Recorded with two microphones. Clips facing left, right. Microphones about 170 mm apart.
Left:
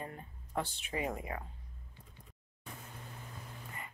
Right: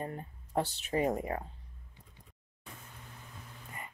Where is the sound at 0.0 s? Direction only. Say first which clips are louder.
Right 5 dB; 35° right (ahead or behind).